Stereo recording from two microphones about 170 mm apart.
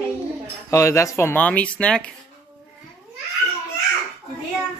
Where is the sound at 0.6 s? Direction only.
15° left (ahead or behind).